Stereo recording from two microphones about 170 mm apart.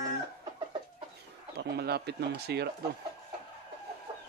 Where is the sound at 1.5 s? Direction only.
70° right (ahead or behind).